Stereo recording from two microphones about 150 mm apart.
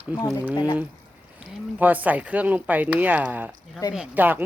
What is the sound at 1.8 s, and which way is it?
Speech, 10° right (ahead or behind).